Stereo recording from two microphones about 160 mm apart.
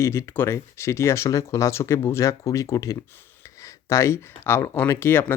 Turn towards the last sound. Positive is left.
turn(degrees=15)  # may be behind; listen again after turning